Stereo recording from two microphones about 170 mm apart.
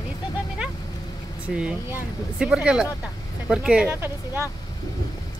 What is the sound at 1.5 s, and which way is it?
Speech, 5° right (ahead or behind).